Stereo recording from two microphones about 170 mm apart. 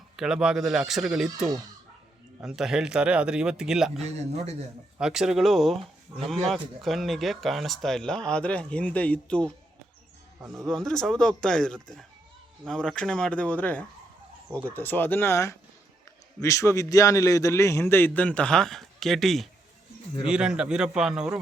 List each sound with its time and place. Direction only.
0.2 s speech: 5° right (ahead or behind)
4.0 s speech: 40° right (ahead or behind)
4.9 s speech: 5° right (ahead or behind)
10.4 s speech: 15° right (ahead or behind)
10.7 s a man's voice: 5° left (ahead or behind)